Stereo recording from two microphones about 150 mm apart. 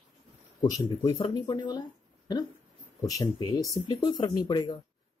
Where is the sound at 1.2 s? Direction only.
35° left (ahead or behind).